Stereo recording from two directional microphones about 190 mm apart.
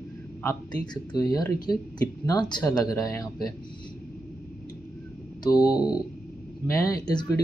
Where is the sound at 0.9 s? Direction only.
20° left (ahead or behind).